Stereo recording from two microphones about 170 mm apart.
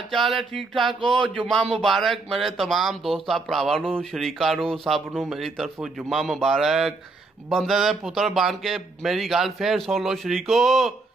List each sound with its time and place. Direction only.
0.1 s speech: centre (ahead or behind)
1.0 s speech: 30° right (ahead or behind)
1.4 s speech: centre (ahead or behind)